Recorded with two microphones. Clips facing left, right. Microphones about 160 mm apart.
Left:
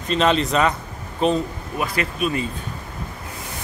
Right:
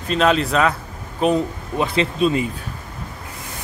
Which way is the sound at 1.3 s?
25° right (ahead or behind).